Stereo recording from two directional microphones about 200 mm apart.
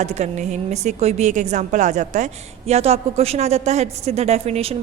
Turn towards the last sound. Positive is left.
turn(degrees=-30)  # may be behind; listen again after turning